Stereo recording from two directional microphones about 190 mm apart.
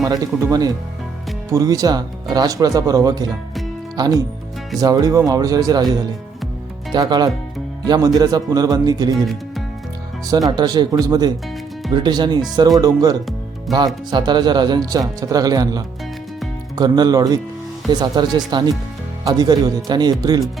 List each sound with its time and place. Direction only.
0.0 s speech: 20° right (ahead or behind)
9.1 s speech: centre (ahead or behind)
10.2 s speech: 20° right (ahead or behind)